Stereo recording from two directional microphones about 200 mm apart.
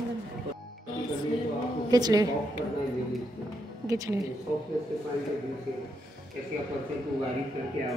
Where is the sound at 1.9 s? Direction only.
20° right (ahead or behind).